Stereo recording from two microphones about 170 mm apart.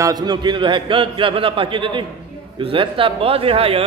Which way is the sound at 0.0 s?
25° right (ahead or behind).